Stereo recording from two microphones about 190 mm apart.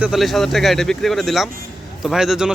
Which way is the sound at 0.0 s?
Centre (ahead or behind).